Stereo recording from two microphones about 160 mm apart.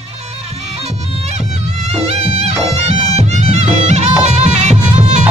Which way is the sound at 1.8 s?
40° right (ahead or behind).